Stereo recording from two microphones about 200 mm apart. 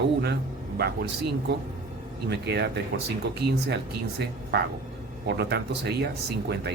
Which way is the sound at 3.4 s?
55° right (ahead or behind).